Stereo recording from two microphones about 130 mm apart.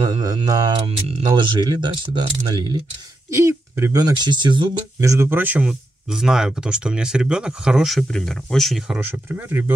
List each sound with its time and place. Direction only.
0.0 s speech: 30° right (ahead or behind)
0.8 s speech: 40° right (ahead or behind)
3.3 s speech: 20° right (ahead or behind)
5.0 s speech: 20° right (ahead or behind)